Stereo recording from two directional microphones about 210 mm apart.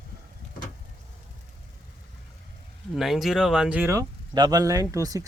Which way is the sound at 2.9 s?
Centre (ahead or behind).